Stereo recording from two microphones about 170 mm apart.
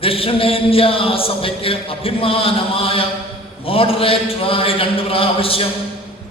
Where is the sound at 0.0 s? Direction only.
35° left (ahead or behind).